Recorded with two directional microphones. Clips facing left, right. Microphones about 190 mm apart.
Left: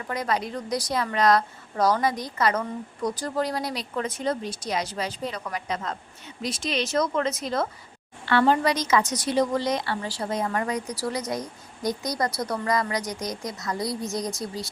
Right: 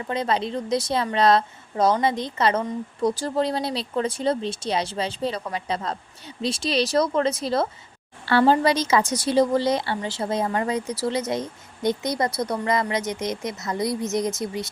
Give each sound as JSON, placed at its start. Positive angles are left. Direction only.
{"t": 0.1, "sound": "a woman's voice", "side_deg": -25}